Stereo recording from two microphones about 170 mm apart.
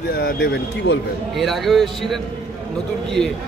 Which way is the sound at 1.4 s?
Centre (ahead or behind).